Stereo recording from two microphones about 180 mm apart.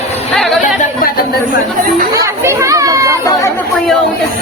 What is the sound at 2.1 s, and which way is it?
Speech, 15° right (ahead or behind).